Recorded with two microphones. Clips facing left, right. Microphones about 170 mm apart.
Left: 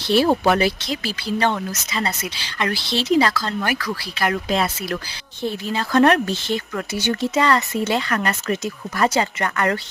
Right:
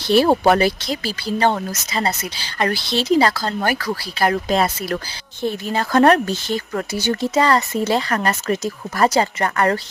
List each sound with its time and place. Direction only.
0.1 s speech: 40° right (ahead or behind)